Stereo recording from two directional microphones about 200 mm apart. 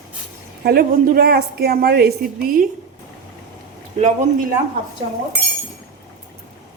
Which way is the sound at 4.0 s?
35° right (ahead or behind).